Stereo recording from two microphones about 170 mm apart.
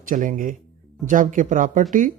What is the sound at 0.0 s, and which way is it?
Speech, 50° right (ahead or behind).